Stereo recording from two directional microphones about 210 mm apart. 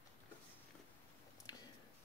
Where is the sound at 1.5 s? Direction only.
20° left (ahead or behind).